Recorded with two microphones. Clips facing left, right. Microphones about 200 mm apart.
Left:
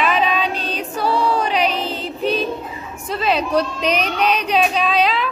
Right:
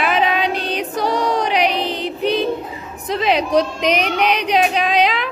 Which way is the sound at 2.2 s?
15° right (ahead or behind).